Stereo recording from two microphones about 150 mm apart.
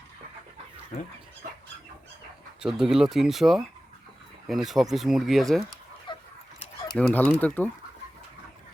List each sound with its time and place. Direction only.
2.6 s speech: 5° right (ahead or behind)
6.1 s fowl: 30° left (ahead or behind)
6.9 s speech: 10° left (ahead or behind)